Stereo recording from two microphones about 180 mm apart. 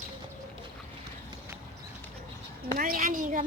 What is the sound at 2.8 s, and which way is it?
Speech, 50° right (ahead or behind).